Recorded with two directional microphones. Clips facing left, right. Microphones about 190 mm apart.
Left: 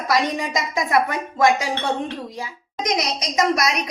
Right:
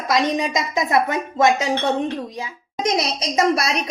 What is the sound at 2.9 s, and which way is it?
A woman's voice, 30° right (ahead or behind).